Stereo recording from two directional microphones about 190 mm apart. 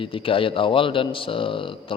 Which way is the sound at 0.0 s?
30° left (ahead or behind).